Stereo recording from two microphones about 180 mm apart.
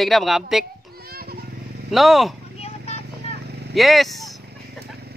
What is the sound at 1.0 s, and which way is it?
Children playing, 60° right (ahead or behind).